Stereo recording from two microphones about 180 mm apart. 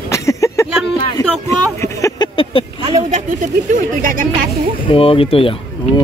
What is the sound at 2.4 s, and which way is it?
Speech, 30° left (ahead or behind).